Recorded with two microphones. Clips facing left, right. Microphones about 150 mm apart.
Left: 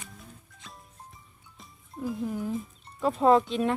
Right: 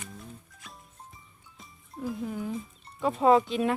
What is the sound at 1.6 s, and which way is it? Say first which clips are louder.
Speech: left 1 dB; centre (ahead or behind).